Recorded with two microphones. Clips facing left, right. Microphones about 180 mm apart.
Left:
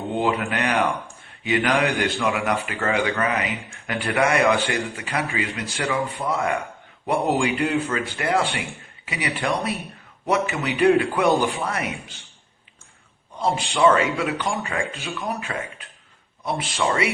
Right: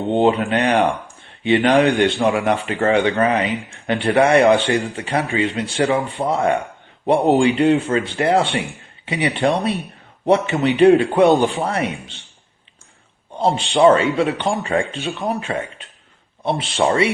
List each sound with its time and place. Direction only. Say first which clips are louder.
0.1 s speech: right 7 dB; 25° right (ahead or behind)
13.3 s speech: right 6 dB; 30° right (ahead or behind)